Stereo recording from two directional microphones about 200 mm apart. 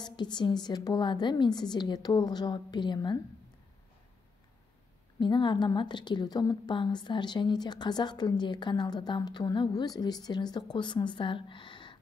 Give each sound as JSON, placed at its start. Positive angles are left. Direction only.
{"t": 0.0, "sound": "a woman's voice", "side_deg": 20}
{"t": 5.2, "sound": "a woman's voice", "side_deg": 25}